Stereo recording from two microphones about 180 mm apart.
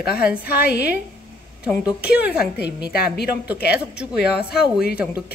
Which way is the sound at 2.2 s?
10° right (ahead or behind).